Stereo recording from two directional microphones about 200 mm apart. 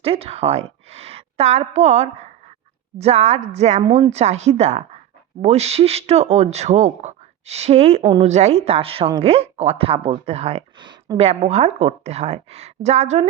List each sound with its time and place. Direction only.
0.0 s a woman's voice: 30° right (ahead or behind)